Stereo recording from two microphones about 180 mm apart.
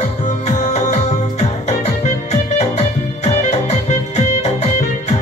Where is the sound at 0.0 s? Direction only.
40° left (ahead or behind).